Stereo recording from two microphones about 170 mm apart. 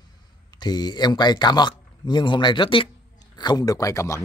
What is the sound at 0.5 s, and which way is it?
Speech, 25° left (ahead or behind).